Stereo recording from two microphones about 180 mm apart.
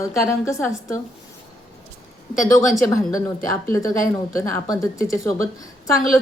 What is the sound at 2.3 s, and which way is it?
Speech, 20° left (ahead or behind).